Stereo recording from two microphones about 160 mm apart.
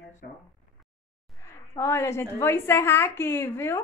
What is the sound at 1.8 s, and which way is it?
A woman's voice, 15° left (ahead or behind).